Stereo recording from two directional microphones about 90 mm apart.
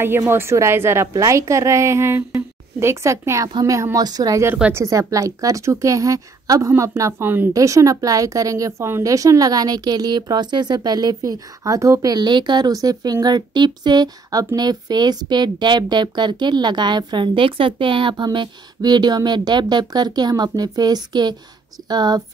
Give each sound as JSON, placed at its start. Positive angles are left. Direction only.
{"t": 0.0, "sound": "a woman's voice", "side_deg": -25}
{"t": 7.5, "sound": "speech", "side_deg": -35}